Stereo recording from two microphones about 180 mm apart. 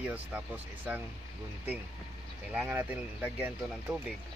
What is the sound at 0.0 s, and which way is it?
Speech, 10° right (ahead or behind).